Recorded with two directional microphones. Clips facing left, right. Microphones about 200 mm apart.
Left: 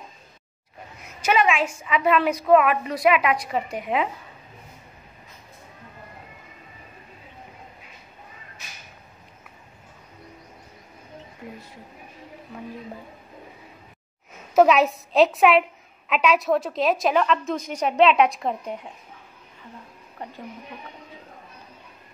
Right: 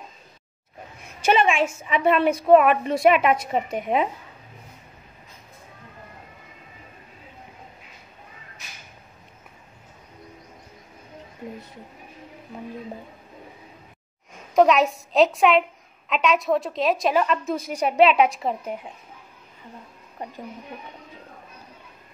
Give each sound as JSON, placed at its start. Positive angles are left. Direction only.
{"t": 1.2, "sound": "a woman's voice", "side_deg": -25}
{"t": 14.3, "sound": "a woman's voice", "side_deg": 5}